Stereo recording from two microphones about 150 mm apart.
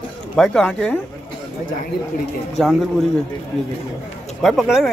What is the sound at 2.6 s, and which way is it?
Speech, centre (ahead or behind).